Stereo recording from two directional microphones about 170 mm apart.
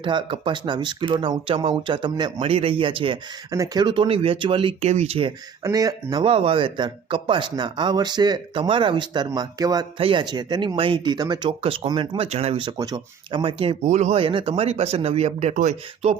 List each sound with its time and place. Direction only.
0.0 s speech: 30° right (ahead or behind)
5.6 s speech: 20° right (ahead or behind)
6.2 s speech: 35° right (ahead or behind)
13.8 s speech: 45° right (ahead or behind)